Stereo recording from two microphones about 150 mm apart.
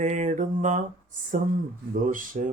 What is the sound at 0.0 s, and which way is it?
Mantra, 50° right (ahead or behind).